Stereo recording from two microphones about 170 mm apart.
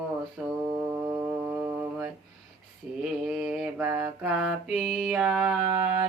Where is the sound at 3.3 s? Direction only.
5° right (ahead or behind).